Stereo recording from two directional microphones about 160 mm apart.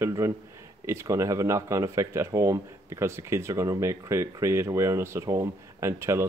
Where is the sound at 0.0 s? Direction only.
15° right (ahead or behind).